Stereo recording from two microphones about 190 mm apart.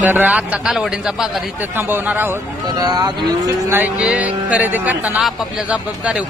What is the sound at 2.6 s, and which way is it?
Speech, 20° right (ahead or behind).